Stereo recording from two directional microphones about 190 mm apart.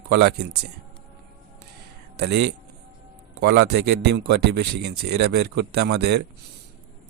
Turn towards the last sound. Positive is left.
turn(degrees=-60)  # may be behind; listen again after turning